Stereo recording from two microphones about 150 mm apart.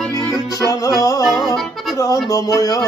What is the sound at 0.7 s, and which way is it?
Music, 25° left (ahead or behind).